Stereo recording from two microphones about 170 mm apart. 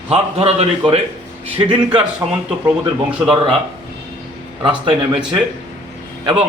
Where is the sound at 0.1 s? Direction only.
35° right (ahead or behind).